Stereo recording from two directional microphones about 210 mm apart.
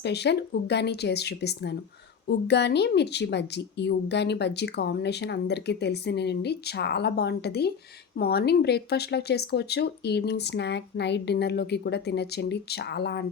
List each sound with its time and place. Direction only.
0.0 s a woman's voice: 55° left (ahead or behind)